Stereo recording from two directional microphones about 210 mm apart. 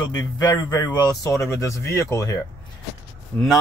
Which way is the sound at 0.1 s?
15° left (ahead or behind).